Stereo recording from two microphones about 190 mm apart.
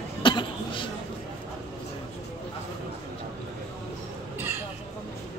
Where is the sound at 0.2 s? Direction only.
25° left (ahead or behind).